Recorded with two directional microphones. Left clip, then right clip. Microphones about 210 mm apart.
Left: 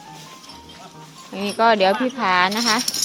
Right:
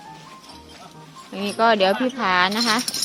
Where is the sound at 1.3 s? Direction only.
5° right (ahead or behind).